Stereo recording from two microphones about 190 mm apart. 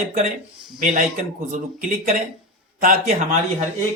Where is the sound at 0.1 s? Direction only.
45° right (ahead or behind).